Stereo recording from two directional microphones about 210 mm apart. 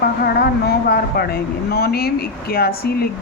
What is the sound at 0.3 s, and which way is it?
Speech, 45° left (ahead or behind).